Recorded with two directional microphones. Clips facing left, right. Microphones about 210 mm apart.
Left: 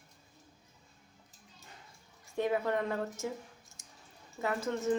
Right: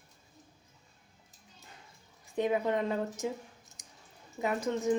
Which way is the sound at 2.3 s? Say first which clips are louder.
Right 2 dB; 20° right (ahead or behind).